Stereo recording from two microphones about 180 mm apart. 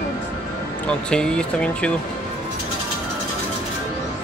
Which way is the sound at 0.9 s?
5° left (ahead or behind).